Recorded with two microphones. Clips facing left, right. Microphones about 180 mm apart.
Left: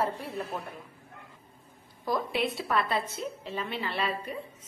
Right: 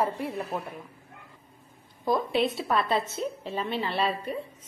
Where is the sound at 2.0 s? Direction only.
25° right (ahead or behind).